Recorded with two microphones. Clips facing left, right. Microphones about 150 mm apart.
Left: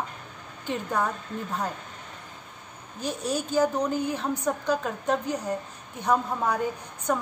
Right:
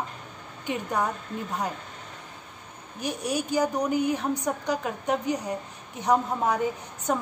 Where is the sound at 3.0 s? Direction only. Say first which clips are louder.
Even; 15° right (ahead or behind).